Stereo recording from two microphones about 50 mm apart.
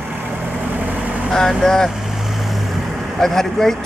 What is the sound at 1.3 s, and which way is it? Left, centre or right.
Speech, centre.